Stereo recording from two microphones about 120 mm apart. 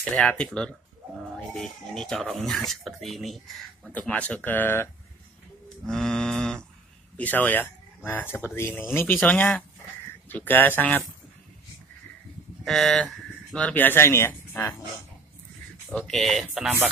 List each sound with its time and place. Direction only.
0.1 s speech: 10° left (ahead or behind)
3.9 s speech: 10° left (ahead or behind)
5.9 s speech: 5° left (ahead or behind)
12.6 s speech: 5° left (ahead or behind)
15.9 s speech: 5° left (ahead or behind)